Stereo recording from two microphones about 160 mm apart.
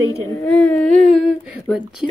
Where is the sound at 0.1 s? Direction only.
20° left (ahead or behind).